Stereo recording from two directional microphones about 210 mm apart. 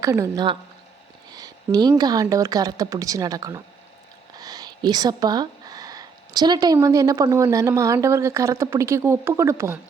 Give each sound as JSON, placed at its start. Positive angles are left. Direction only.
{"t": 0.0, "sound": "speech", "side_deg": -15}